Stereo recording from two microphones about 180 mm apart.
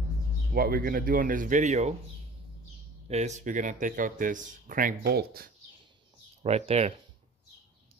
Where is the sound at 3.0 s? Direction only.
40° right (ahead or behind); by 5.5 s 60° right (ahead or behind).